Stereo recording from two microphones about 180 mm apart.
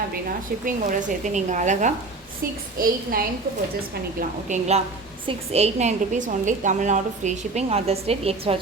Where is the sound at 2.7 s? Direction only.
55° right (ahead or behind).